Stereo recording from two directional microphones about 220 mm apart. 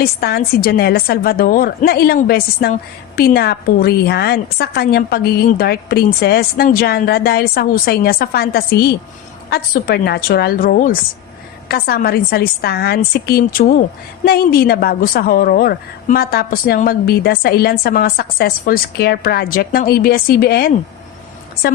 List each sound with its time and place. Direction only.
0.0 s a woman's voice: 45° left (ahead or behind)